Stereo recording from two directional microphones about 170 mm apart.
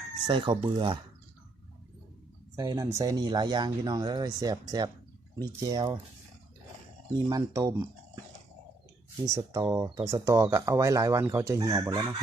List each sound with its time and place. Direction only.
0.3 s speech: 30° right (ahead or behind)
2.6 s speech: 20° right (ahead or behind)
7.3 s speech: 20° right (ahead or behind)
9.2 s speech: 20° right (ahead or behind)